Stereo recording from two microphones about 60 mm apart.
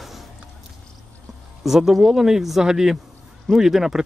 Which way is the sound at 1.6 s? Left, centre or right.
Centre.